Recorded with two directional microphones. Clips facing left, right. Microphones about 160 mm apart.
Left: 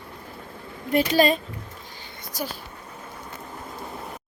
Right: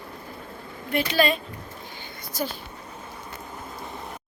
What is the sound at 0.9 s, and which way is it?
Speech, 40° left (ahead or behind).